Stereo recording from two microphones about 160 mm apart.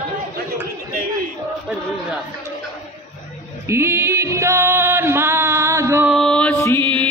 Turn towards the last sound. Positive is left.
turn(degrees=10)  # may be behind; listen again after turning